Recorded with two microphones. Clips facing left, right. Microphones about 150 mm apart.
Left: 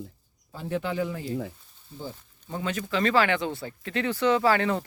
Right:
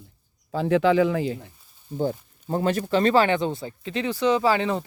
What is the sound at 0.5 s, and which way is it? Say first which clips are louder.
Speech: right 10 dB; 90° right.